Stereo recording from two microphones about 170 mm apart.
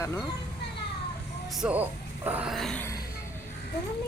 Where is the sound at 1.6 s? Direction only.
5° right (ahead or behind).